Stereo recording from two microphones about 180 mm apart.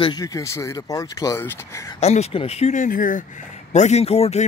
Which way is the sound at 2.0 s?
35° left (ahead or behind).